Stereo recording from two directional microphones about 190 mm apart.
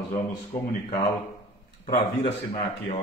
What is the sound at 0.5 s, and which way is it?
Speech, 15° left (ahead or behind).